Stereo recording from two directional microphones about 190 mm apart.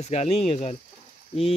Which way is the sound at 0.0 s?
35° left (ahead or behind).